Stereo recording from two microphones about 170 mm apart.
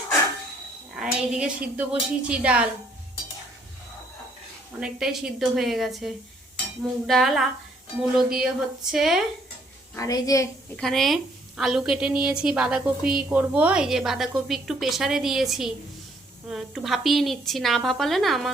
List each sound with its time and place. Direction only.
0.9 s a woman's voice: 5° right (ahead or behind)
4.8 s a woman's voice: 5° right (ahead or behind)
9.9 s a woman's voice: 20° left (ahead or behind)
10.8 s a woman's voice: centre (ahead or behind)